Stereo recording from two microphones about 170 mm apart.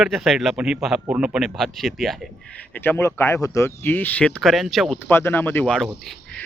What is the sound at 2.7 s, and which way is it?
Speech, 10° left (ahead or behind).